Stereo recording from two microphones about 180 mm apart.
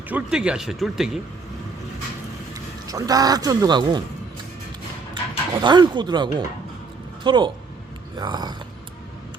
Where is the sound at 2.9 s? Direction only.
20° right (ahead or behind).